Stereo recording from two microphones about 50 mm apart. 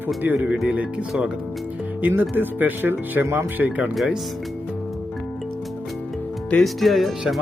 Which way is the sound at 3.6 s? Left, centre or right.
Right.